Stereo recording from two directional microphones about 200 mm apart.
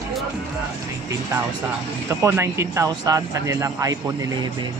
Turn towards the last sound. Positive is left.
turn(degrees=-15)  # may be behind; listen again after turning